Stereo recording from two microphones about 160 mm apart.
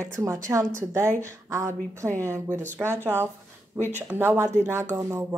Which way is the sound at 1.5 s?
20° right (ahead or behind).